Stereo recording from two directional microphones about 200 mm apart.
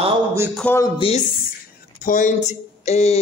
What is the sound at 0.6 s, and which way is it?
Speech, 10° left (ahead or behind).